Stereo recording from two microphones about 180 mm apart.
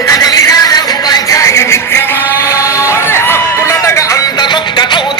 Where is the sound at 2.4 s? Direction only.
15° left (ahead or behind).